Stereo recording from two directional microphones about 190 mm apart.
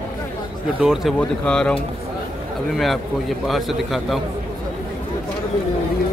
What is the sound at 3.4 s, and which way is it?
Speech, centre (ahead or behind).